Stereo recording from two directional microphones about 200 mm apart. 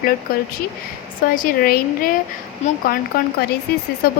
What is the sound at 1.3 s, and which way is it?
Speech, 45° left (ahead or behind).